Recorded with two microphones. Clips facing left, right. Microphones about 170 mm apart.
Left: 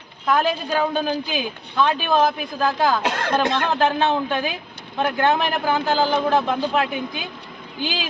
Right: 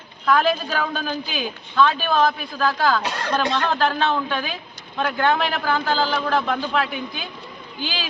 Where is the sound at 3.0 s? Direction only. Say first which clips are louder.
Left 2 dB; 55° left (ahead or behind).